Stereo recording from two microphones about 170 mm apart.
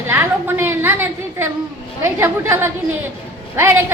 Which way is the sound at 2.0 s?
15° right (ahead or behind).